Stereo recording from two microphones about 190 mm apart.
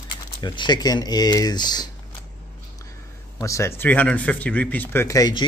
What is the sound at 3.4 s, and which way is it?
Speech, 15° left (ahead or behind).